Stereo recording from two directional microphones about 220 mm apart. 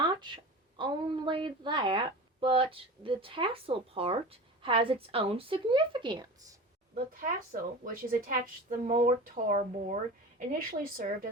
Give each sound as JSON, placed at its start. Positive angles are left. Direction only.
{"t": 0.1, "sound": "a sound", "side_deg": -20}
{"t": 0.8, "sound": "a woman's voice", "side_deg": -20}
{"t": 6.9, "sound": "a woman's voice", "side_deg": -40}